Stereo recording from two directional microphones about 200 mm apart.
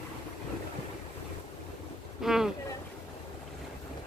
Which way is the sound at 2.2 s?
Centre (ahead or behind).